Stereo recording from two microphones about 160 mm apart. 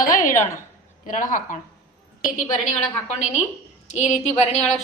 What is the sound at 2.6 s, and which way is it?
A woman's voice, 45° left (ahead or behind).